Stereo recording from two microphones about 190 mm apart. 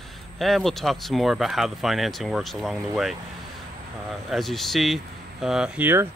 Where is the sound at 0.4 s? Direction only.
Centre (ahead or behind).